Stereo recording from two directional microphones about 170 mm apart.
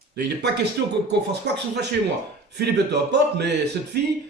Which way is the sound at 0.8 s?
70° right (ahead or behind).